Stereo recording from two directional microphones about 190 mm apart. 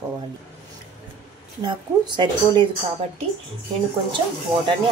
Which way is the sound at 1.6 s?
25° right (ahead or behind).